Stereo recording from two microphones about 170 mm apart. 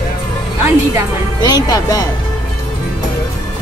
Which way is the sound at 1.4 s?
20° left (ahead or behind).